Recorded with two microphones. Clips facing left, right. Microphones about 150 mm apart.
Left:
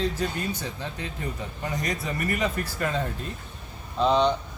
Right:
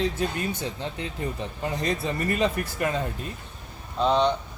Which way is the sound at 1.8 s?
25° right (ahead or behind).